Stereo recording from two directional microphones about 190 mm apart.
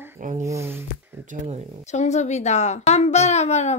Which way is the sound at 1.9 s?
40° left (ahead or behind).